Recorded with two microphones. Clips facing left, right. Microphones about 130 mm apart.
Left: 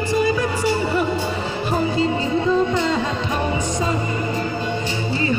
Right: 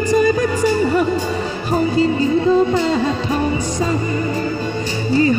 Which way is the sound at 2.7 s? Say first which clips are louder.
Right 3 dB; 40° right (ahead or behind).